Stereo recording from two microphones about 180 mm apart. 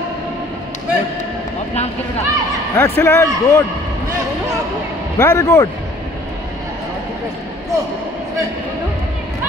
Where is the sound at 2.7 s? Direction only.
10° left (ahead or behind).